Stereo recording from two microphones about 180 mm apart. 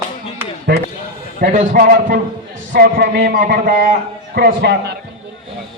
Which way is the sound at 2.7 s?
65° right (ahead or behind).